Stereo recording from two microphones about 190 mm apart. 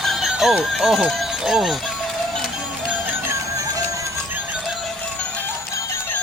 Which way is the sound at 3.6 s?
15° right (ahead or behind).